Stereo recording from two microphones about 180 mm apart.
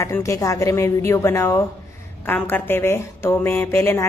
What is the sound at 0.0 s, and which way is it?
A woman's voice, 15° left (ahead or behind).